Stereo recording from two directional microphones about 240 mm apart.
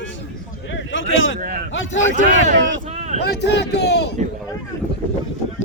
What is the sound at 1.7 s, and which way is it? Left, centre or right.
Speech, left.